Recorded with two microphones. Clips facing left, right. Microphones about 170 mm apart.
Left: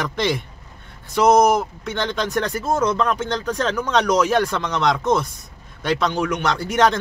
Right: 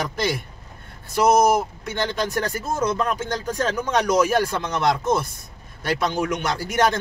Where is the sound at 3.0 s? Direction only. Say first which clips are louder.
Left 3 dB; 70° left (ahead or behind).